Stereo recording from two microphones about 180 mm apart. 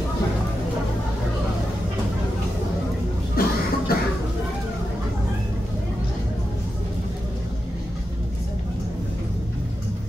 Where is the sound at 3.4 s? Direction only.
55° left (ahead or behind).